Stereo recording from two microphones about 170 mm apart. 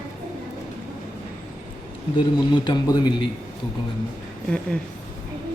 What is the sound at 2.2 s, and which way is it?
Speech, 25° left (ahead or behind).